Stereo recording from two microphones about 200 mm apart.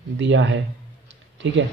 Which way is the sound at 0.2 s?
65° right (ahead or behind).